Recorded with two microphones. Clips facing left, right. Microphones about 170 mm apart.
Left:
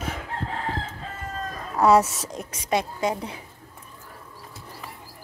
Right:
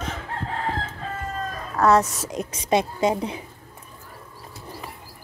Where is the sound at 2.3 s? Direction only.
20° right (ahead or behind).